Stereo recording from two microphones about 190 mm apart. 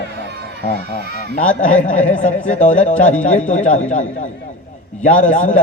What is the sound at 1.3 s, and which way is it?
Speech, 45° left (ahead or behind).